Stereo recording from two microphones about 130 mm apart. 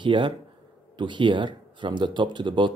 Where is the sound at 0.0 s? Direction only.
40° right (ahead or behind).